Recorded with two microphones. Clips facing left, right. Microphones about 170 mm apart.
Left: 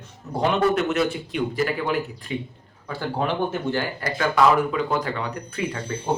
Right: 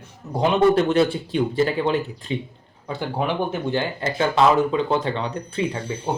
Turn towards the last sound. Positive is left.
turn(degrees=-15)  # may be behind; listen again after turning